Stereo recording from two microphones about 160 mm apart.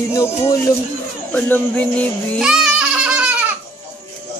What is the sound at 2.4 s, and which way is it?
Music, 5° right (ahead or behind).